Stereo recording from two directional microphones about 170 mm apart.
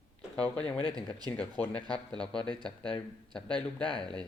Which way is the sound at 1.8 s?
25° right (ahead or behind).